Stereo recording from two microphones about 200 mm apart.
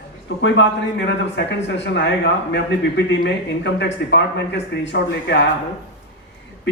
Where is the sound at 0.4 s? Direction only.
65° left (ahead or behind).